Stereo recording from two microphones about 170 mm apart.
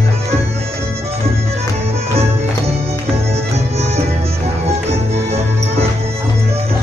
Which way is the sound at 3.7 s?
40° right (ahead or behind).